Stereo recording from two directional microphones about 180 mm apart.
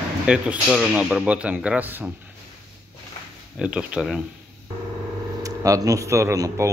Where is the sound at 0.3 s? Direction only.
5° right (ahead or behind).